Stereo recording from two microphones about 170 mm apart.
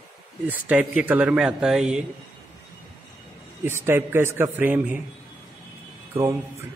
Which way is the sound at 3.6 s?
15° right (ahead or behind).